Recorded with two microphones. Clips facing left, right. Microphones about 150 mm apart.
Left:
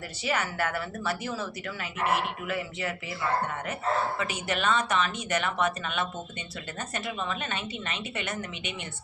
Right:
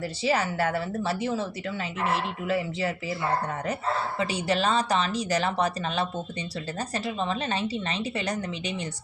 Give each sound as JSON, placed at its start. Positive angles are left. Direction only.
{"t": 0.2, "sound": "a woman's voice", "side_deg": -30}
{"t": 4.2, "sound": "speech", "side_deg": -30}